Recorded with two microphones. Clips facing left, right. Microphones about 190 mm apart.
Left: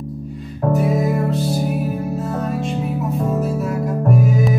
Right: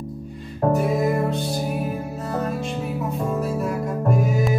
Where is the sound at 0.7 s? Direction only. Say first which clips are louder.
Left 2 dB; centre (ahead or behind).